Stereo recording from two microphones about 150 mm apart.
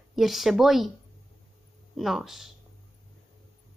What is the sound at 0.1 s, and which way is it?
Speech, centre (ahead or behind).